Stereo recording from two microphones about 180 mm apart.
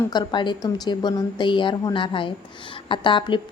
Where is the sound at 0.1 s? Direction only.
25° left (ahead or behind).